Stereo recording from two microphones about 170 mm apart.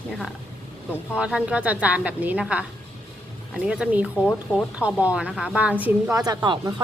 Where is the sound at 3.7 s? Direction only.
5° right (ahead or behind).